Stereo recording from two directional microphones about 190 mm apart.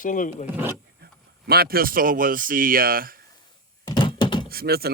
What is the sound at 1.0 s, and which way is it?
Speech, 55° right (ahead or behind).